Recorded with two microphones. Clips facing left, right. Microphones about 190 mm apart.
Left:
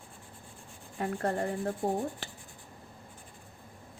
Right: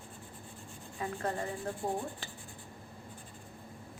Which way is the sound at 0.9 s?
50° left (ahead or behind).